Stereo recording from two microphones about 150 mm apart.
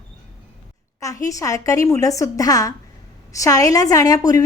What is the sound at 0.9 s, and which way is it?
A woman's voice, 20° left (ahead or behind).